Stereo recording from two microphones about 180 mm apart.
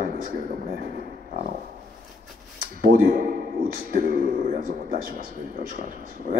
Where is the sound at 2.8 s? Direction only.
50° right (ahead or behind).